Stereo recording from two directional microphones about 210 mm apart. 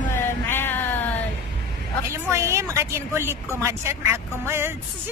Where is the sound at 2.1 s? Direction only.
15° right (ahead or behind).